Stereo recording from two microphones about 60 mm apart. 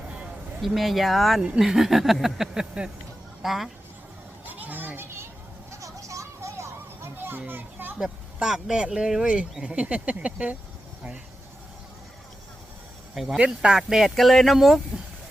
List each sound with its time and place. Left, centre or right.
0.6 s speech: centre
4.4 s children playing: right
5.8 s a sound: right
7.0 s children playing: right
7.9 s speech: centre
13.1 s speech: centre